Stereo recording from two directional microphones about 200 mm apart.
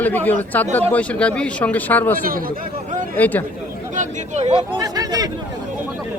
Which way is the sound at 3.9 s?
35° right (ahead or behind).